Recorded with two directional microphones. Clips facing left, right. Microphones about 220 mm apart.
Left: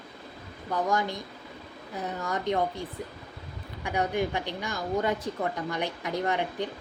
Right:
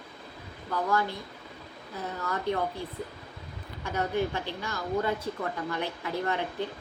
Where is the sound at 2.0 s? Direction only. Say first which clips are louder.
Left 2 dB; 20° left (ahead or behind).